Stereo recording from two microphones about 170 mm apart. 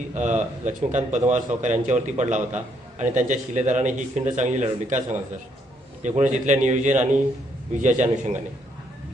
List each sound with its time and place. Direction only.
0.1 s speech: 45° right (ahead or behind)